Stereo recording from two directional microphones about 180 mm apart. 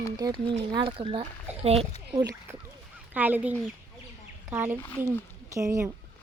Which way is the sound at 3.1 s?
10° right (ahead or behind).